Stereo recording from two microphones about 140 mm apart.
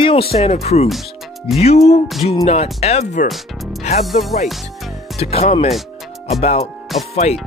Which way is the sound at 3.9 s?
55° left (ahead or behind).